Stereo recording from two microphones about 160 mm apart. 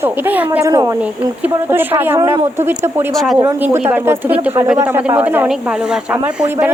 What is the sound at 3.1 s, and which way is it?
Speech, centre (ahead or behind).